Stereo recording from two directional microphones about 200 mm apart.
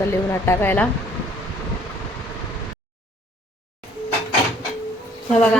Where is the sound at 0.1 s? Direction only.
10° left (ahead or behind).